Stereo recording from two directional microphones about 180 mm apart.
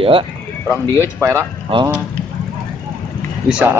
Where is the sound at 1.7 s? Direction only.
30° right (ahead or behind).